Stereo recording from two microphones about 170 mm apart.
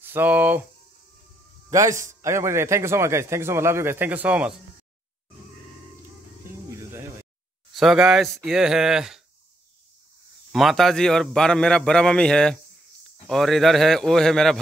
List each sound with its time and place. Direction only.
0.0 s a man's voice: 10° right (ahead or behind)
1.7 s a man's voice: 20° right (ahead or behind)
7.7 s a man's voice: centre (ahead or behind)
10.5 s a man's voice: centre (ahead or behind)